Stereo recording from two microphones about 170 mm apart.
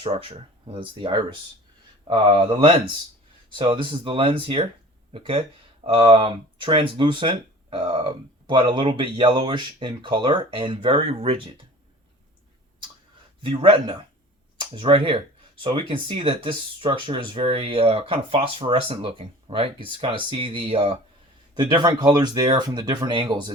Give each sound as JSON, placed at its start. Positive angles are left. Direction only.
{"t": 0.0, "sound": "speech", "side_deg": -30}
{"t": 13.4, "sound": "speech", "side_deg": -30}